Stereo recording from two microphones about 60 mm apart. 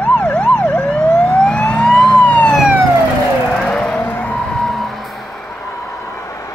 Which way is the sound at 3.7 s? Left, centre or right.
Centre.